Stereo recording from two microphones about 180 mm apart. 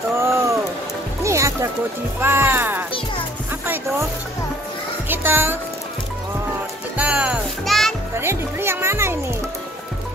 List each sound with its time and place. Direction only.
0.1 s a sound: 15° right (ahead or behind)
1.2 s music: 15° right (ahead or behind)
2.2 s a child's voice: 10° right (ahead or behind)
5.0 s speech: 10° right (ahead or behind)
7.0 s music: 5° right (ahead or behind)
8.1 s a child's voice: 15° right (ahead or behind)